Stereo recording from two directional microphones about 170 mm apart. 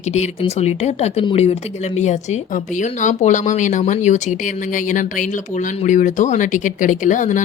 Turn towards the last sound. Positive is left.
turn(degrees=50)  # may be behind; listen again after turning